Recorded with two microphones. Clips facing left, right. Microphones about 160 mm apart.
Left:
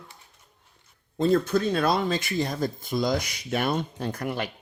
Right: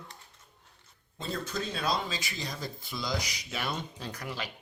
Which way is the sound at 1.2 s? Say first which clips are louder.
Left 13 dB; 55° left (ahead or behind).